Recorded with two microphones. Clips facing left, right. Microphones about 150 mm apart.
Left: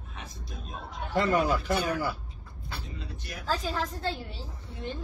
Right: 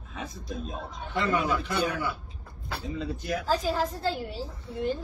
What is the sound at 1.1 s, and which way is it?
Speech, 40° left (ahead or behind).